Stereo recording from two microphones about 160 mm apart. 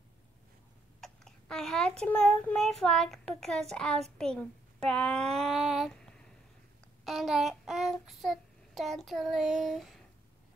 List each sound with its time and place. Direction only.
1.0 s a child's voice: 5° left (ahead or behind)
7.1 s child singing: centre (ahead or behind)